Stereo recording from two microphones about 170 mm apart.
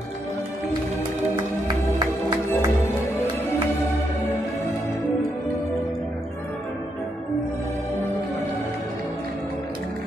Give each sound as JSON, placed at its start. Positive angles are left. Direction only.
{"t": 2.0, "sound": "music", "side_deg": -25}